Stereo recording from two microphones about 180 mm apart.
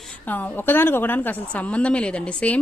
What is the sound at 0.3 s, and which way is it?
A woman's voice, 10° left (ahead or behind).